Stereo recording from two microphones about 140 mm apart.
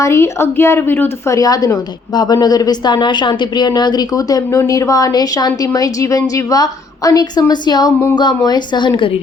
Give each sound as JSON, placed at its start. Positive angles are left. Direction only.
{"t": 0.0, "sound": "a woman's voice", "side_deg": 20}